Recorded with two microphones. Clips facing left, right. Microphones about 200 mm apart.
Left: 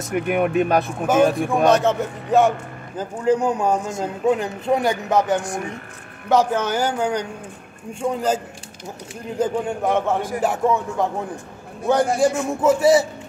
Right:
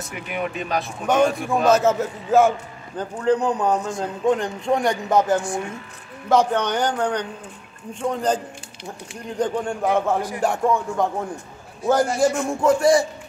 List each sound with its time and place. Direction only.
0.1 s speech: 55° left (ahead or behind)
1.0 s a man's voice: 5° left (ahead or behind)
9.4 s a man's voice: 5° left (ahead or behind)